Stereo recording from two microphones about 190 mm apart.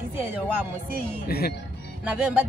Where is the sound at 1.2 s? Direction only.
50° left (ahead or behind).